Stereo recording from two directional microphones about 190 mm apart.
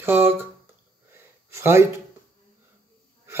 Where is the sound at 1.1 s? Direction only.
10° right (ahead or behind).